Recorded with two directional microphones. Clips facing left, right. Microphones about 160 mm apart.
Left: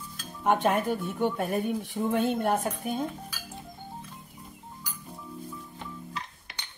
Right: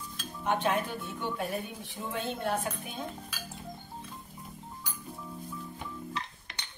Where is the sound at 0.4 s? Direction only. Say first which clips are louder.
Left 5 dB; 45° left (ahead or behind).